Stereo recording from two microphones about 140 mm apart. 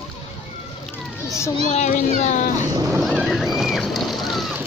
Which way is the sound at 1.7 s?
60° left (ahead or behind).